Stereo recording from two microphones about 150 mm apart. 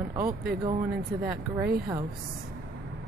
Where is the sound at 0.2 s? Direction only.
90° right.